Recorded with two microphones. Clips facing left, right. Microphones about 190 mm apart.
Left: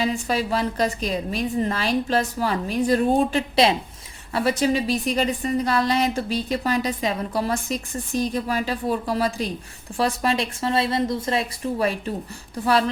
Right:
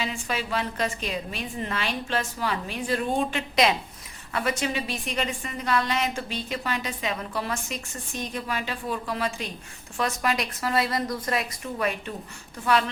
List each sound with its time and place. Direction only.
0.0 s a woman's voice: 35° left (ahead or behind)